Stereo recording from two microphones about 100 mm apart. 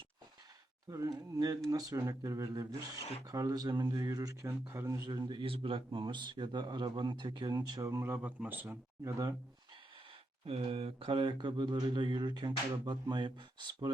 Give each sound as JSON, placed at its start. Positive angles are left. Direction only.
{"t": 0.9, "sound": "speech", "side_deg": -35}
{"t": 4.7, "sound": "speech", "side_deg": -30}
{"t": 5.0, "sound": "speech", "side_deg": -45}
{"t": 5.4, "sound": "speech", "side_deg": -65}
{"t": 7.9, "sound": "speech", "side_deg": -25}
{"t": 8.6, "sound": "speech", "side_deg": -30}
{"t": 10.4, "sound": "speech", "side_deg": -75}